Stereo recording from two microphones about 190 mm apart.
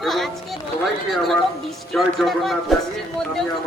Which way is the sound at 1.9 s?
Centre (ahead or behind).